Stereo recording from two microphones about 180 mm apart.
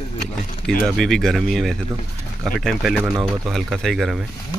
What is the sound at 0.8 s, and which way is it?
Speech, centre (ahead or behind).